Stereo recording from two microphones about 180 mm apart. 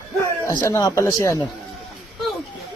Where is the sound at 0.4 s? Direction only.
15° left (ahead or behind).